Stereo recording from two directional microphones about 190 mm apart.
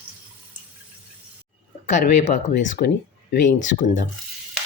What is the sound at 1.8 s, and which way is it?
Speech, 40° left (ahead or behind).